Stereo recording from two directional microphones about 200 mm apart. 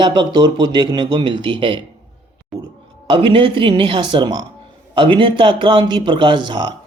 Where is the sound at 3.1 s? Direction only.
25° right (ahead or behind).